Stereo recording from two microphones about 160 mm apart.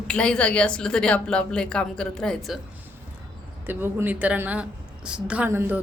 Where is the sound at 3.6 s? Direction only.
15° right (ahead or behind).